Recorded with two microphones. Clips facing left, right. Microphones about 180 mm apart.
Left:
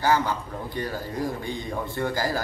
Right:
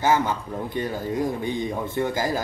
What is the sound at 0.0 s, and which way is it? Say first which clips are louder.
A man's voice: right 2 dB; 20° right (ahead or behind).